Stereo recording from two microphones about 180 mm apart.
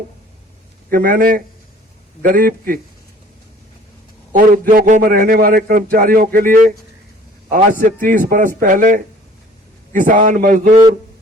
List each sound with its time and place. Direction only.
0.9 s a man's voice: 55° right (ahead or behind)
4.3 s a man's voice: 50° right (ahead or behind)